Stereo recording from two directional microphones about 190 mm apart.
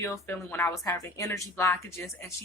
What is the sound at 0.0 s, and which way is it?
Speech, 10° left (ahead or behind).